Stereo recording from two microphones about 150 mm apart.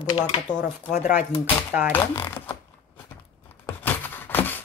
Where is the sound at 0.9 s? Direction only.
55° left (ahead or behind).